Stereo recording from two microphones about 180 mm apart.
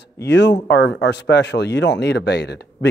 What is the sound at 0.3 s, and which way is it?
Speech, 75° left (ahead or behind).